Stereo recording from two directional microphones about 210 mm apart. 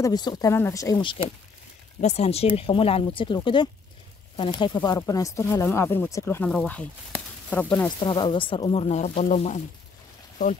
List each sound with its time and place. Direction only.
0.0 s speech: 20° left (ahead or behind)
2.0 s speech: 30° left (ahead or behind); by 7.9 s 10° left (ahead or behind)
8.0 s speech: 20° left (ahead or behind)